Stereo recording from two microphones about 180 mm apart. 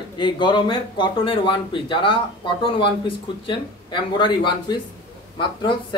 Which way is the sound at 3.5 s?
25° left (ahead or behind).